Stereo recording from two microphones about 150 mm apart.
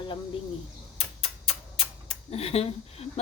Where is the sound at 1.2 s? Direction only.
40° left (ahead or behind).